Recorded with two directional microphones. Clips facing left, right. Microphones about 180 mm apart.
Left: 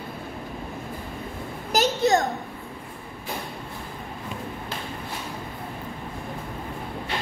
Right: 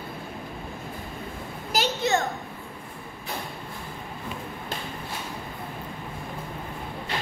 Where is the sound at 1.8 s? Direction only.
40° left (ahead or behind).